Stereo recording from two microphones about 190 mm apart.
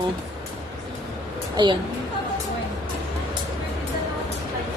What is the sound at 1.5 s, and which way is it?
Speech, 25° right (ahead or behind).